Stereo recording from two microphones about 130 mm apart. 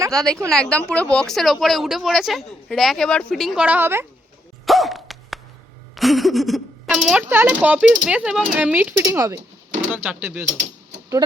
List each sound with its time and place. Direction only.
0.1 s a woman's voice: 5° left (ahead or behind); by 4.0 s 15° right (ahead or behind)
4.6 s dog: centre (ahead or behind)
5.9 s a sound: centre (ahead or behind)
6.9 s speech: 10° right (ahead or behind)